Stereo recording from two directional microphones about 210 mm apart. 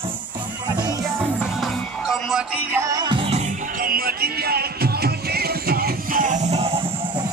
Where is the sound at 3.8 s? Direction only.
45° right (ahead or behind); by 7.2 s 25° right (ahead or behind).